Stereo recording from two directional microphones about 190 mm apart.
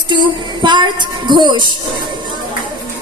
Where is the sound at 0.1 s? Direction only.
25° right (ahead or behind).